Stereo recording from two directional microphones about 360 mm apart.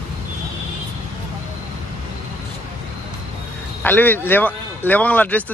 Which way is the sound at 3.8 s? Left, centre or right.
Centre.